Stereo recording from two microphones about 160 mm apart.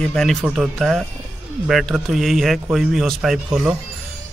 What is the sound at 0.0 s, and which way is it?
Speech, centre (ahead or behind).